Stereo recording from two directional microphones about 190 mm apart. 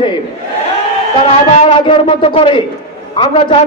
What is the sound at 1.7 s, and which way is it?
A man's voice, 30° left (ahead or behind).